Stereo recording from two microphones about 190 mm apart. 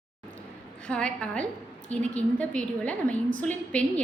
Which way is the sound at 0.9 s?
5° left (ahead or behind).